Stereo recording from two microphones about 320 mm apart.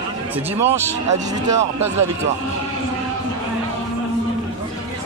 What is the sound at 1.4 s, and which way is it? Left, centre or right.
Speech, right.